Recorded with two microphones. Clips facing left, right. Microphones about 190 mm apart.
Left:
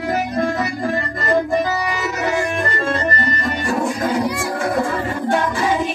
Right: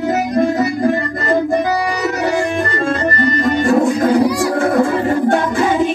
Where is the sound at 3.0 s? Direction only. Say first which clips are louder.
Right 6 dB; 50° right (ahead or behind).